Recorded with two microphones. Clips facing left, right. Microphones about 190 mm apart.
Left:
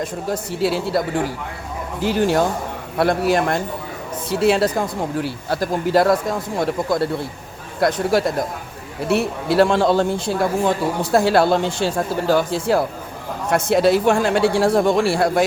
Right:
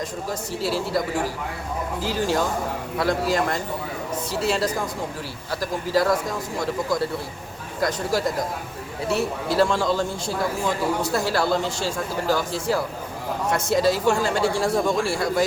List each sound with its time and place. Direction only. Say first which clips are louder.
0.0 s a man's voice: left 5 dB; 60° left (ahead or behind)
2.0 s a man's voice: left 6 dB; 60° left (ahead or behind)
9.0 s a man's voice: left 5 dB; 65° left (ahead or behind)